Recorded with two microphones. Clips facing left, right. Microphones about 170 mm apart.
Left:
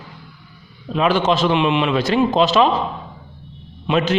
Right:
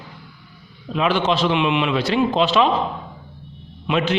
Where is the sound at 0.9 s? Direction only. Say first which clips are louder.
Left 2 dB; 40° left (ahead or behind).